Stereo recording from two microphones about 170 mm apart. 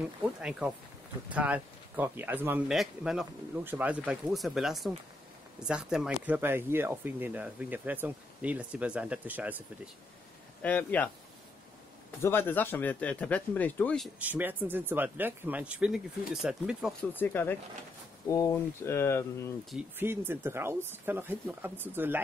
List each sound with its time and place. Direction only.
0.4 s speech: 5° right (ahead or behind)
10.6 s speech: 10° left (ahead or behind)
12.2 s speech: 15° left (ahead or behind)
14.2 s speech: 10° right (ahead or behind)
17.0 s speech: 10° left (ahead or behind)
19.7 s speech: 10° right (ahead or behind)